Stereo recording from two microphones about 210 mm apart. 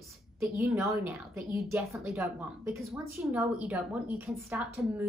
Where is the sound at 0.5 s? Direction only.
15° right (ahead or behind).